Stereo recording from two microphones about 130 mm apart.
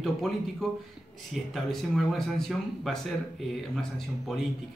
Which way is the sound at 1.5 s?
Centre (ahead or behind).